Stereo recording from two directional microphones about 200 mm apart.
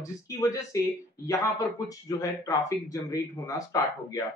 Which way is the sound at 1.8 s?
15° left (ahead or behind).